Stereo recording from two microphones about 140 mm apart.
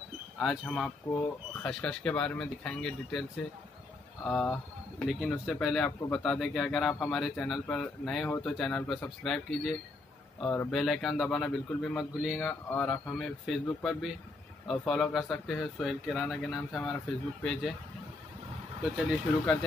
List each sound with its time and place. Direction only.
0.4 s a man's voice: centre (ahead or behind)
10.4 s speech: 10° left (ahead or behind)
10.7 s a man's voice: centre (ahead or behind)
19.0 s a man's voice: 5° left (ahead or behind)